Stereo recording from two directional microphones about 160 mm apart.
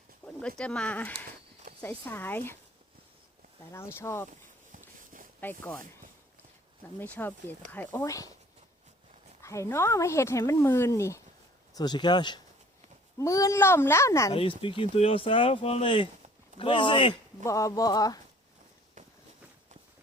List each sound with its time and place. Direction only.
0.4 s speech: 5° left (ahead or behind)
3.7 s speech: 15° left (ahead or behind)
4.3 s a sound: 55° right (ahead or behind)
5.4 s speech: 10° left (ahead or behind)
7.0 s speech: 10° left (ahead or behind)
8.0 s speech: 20° left (ahead or behind)
9.4 s speech: 20° left (ahead or behind)
14.3 s speech: 35° left (ahead or behind)
17.4 s speech: 20° left (ahead or behind)